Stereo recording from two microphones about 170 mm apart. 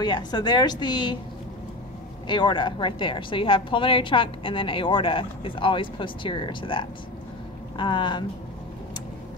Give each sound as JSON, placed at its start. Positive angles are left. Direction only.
{"t": 0.0, "sound": "a woman's voice", "side_deg": 25}
{"t": 2.2, "sound": "a woman's voice", "side_deg": 30}